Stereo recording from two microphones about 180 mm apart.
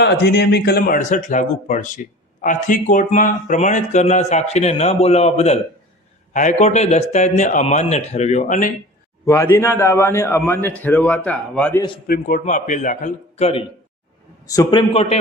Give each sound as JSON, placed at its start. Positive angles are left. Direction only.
{"t": 0.0, "sound": "speech", "side_deg": 65}
{"t": 9.2, "sound": "a man's voice", "side_deg": 15}
{"t": 12.0, "sound": "speech", "side_deg": 55}
{"t": 14.4, "sound": "a man's voice", "side_deg": 20}